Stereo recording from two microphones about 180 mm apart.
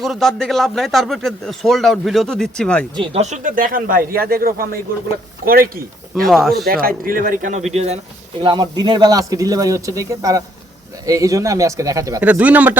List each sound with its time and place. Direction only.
0.0 s a man's voice: centre (ahead or behind)
2.9 s speech: 30° right (ahead or behind); by 6.2 s 55° right (ahead or behind)
6.2 s a man's voice: centre (ahead or behind)
6.7 s speech: 55° right (ahead or behind); by 7.9 s 35° right (ahead or behind)
8.4 s speech: 25° right (ahead or behind)
12.2 s speech: 10° right (ahead or behind)